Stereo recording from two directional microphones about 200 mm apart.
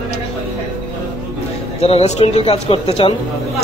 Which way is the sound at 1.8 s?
30° left (ahead or behind).